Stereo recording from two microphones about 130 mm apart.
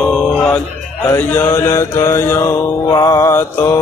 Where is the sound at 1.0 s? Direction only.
20° left (ahead or behind).